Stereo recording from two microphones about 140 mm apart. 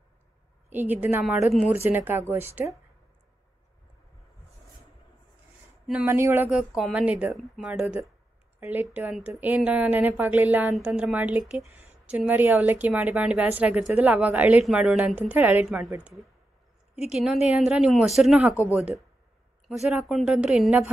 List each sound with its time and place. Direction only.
0.7 s a woman's voice: 15° right (ahead or behind)
6.0 s a woman's voice: 15° right (ahead or behind)
8.5 s a woman's voice: 15° right (ahead or behind)
17.0 s speech: 5° right (ahead or behind)